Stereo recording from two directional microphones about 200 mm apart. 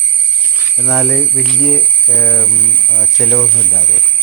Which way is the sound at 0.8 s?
5° right (ahead or behind).